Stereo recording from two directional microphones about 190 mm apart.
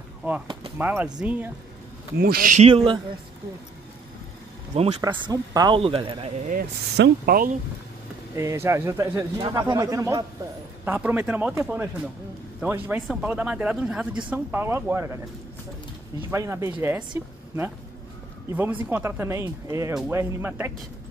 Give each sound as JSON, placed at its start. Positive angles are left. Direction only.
{"t": 0.7, "sound": "speech", "side_deg": -10}
{"t": 2.1, "sound": "speech", "side_deg": -50}
{"t": 2.7, "sound": "speech", "side_deg": -30}
{"t": 5.0, "sound": "speech", "side_deg": -20}
{"t": 6.5, "sound": "speech", "side_deg": -50}
{"t": 8.4, "sound": "speech", "side_deg": -15}
{"t": 16.3, "sound": "speech", "side_deg": -15}
{"t": 18.6, "sound": "speech", "side_deg": -10}